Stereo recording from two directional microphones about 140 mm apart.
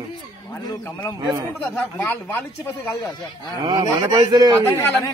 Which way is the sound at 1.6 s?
10° left (ahead or behind).